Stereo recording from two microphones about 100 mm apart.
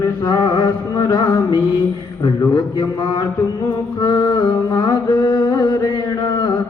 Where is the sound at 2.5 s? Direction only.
50° left (ahead or behind).